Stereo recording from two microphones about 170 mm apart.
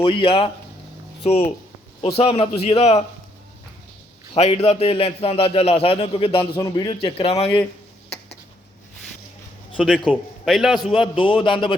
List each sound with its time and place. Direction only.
0.0 s a man's voice: 30° left (ahead or behind)
4.4 s a man's voice: 35° left (ahead or behind)
9.7 s a man's voice: centre (ahead or behind)
10.8 s a man's voice: 30° left (ahead or behind)